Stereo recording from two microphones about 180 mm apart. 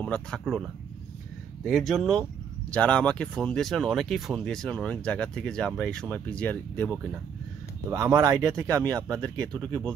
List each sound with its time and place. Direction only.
0.0 s speech: 5° left (ahead or behind)
7.9 s speech: 15° right (ahead or behind)